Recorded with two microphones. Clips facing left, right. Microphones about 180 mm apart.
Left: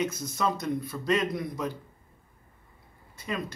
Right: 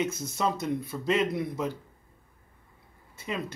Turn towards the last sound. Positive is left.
turn(degrees=-25)  # may be behind; listen again after turning